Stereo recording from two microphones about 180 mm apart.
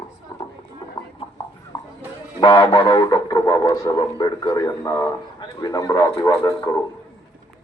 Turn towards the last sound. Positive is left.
turn(degrees=15)  # may be behind; listen again after turning